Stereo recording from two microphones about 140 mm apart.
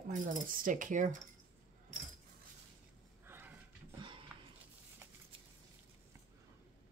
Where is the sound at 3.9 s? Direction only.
35° right (ahead or behind).